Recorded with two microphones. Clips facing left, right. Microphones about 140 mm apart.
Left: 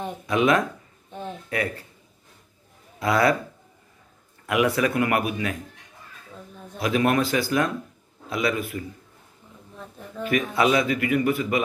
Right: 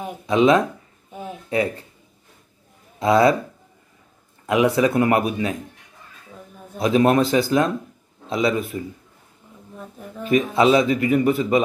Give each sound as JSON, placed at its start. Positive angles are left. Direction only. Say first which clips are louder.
{"t": 0.3, "sound": "a man's voice", "louder": "right 5 dB", "side_deg": -25}
{"t": 1.1, "sound": "a sound", "louder": "right 1 dB", "side_deg": -10}
{"t": 1.5, "sound": "a man's voice", "louder": "right 6 dB", "side_deg": -25}
{"t": 3.0, "sound": "a man's voice", "louder": "right 5 dB", "side_deg": -25}
{"t": 4.5, "sound": "a man's voice", "louder": "right 4 dB", "side_deg": -25}
{"t": 6.8, "sound": "a man's voice", "louder": "right 5 dB", "side_deg": -25}
{"t": 9.8, "sound": "speech", "louder": "right 1 dB", "side_deg": -5}
{"t": 10.2, "sound": "a man's voice", "louder": "right 5 dB", "side_deg": -25}